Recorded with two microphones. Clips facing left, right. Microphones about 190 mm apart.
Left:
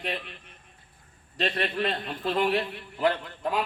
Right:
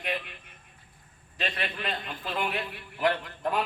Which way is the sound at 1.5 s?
35° left (ahead or behind).